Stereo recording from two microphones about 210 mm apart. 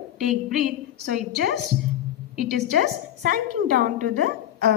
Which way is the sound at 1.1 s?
45° right (ahead or behind).